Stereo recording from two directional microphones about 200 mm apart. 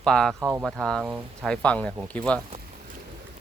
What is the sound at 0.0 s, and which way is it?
Speech, 5° left (ahead or behind).